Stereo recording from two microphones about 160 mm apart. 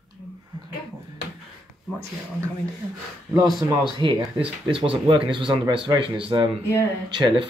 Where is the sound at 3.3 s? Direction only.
25° right (ahead or behind).